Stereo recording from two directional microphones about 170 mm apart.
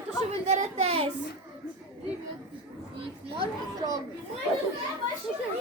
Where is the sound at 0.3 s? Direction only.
40° right (ahead or behind).